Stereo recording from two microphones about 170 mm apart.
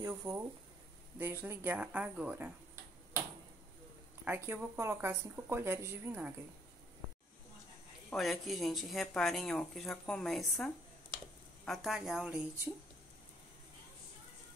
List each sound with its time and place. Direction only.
0.0 s speech: 20° right (ahead or behind)
4.2 s speech: 10° right (ahead or behind)
8.1 s speech: centre (ahead or behind)